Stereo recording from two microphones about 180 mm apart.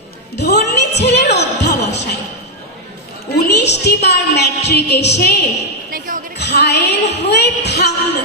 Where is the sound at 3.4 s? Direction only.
70° left (ahead or behind).